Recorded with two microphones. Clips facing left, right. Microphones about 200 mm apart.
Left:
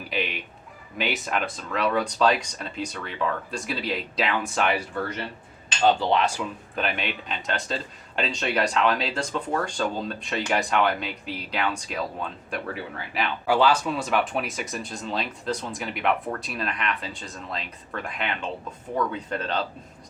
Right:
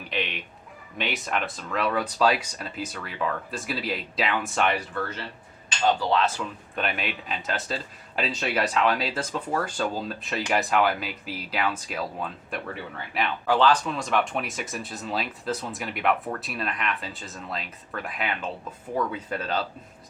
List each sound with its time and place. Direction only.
0.1 s a sound: 5° left (ahead or behind)
0.9 s speech: centre (ahead or behind)
4.9 s speech: 15° left (ahead or behind)
6.7 s speech: centre (ahead or behind)